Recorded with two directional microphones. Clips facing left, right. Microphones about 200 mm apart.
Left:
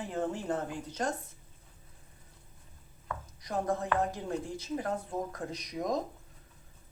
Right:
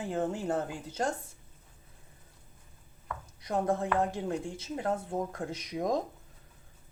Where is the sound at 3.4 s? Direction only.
25° right (ahead or behind).